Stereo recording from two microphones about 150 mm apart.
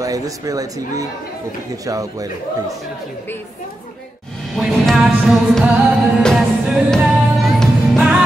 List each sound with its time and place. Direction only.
0.0 s speech: 25° right (ahead or behind)
4.6 s music: centre (ahead or behind)